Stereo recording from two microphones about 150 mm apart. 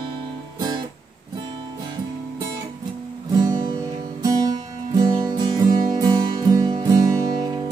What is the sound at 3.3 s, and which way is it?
Music, 25° right (ahead or behind).